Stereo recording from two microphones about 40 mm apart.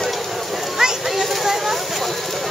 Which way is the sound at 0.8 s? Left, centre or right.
Centre.